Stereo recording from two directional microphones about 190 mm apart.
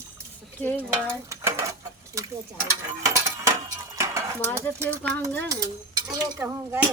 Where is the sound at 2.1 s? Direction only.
15° right (ahead or behind).